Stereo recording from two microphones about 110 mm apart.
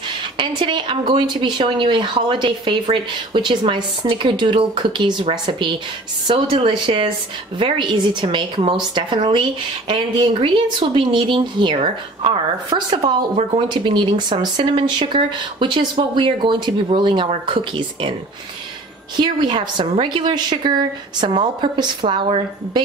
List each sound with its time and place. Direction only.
0.1 s a woman's voice: 45° right (ahead or behind)
11.8 s speech: 60° right (ahead or behind)
12.6 s a woman's voice: 40° right (ahead or behind)
19.1 s a woman's voice: 45° right (ahead or behind)